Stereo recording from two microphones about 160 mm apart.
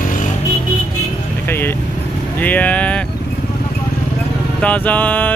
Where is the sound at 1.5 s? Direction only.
15° left (ahead or behind).